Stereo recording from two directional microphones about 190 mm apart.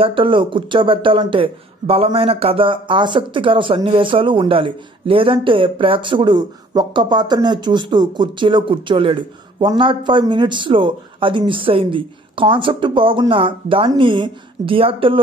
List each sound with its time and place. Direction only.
0.0 s speech: 25° right (ahead or behind)